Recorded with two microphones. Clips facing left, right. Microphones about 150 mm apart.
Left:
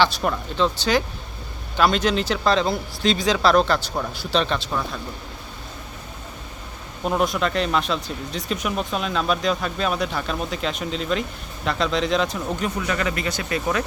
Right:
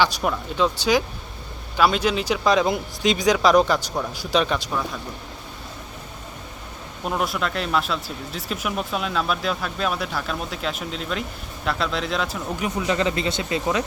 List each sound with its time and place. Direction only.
0.0 s speech: 5° right (ahead or behind)
7.0 s speech: centre (ahead or behind)
12.8 s speech: 25° right (ahead or behind)